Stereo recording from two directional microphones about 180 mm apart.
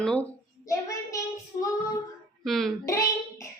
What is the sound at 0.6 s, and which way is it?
Child singing, 20° left (ahead or behind).